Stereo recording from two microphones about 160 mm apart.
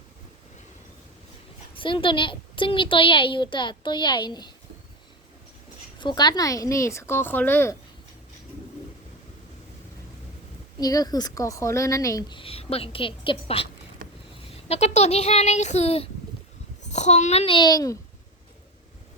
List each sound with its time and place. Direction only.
1.8 s a woman's voice: 30° left (ahead or behind)
6.0 s a woman's voice: 25° left (ahead or behind)
10.8 s a woman's voice: 25° left (ahead or behind)
12.4 s a woman's voice: 35° left (ahead or behind)
14.7 s a woman's voice: 40° left (ahead or behind); by 17.9 s 25° left (ahead or behind)